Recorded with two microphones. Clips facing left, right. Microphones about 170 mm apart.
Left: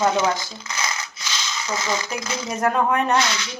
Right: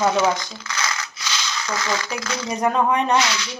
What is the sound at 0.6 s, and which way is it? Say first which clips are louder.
Rattle: right 1 dB; 25° left (ahead or behind).